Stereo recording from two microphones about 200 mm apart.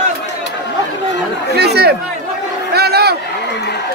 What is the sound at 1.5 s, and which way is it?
Speech, 55° right (ahead or behind).